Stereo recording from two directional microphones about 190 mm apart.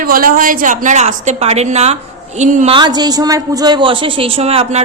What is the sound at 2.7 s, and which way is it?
A man's voice, 20° right (ahead or behind).